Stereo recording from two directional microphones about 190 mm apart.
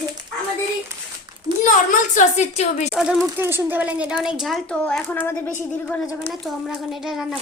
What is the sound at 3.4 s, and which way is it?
A woman's voice, 10° right (ahead or behind).